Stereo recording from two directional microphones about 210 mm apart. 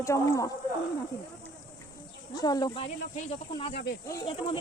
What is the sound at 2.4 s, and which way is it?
Speech, 20° left (ahead or behind).